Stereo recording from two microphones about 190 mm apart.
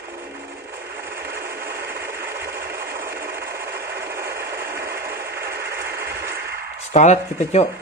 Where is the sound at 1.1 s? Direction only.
55° right (ahead or behind).